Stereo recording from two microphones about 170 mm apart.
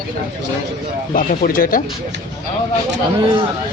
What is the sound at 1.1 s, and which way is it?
Speech, 55° left (ahead or behind).